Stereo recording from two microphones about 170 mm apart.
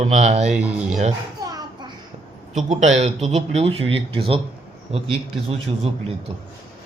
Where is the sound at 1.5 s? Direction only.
20° right (ahead or behind).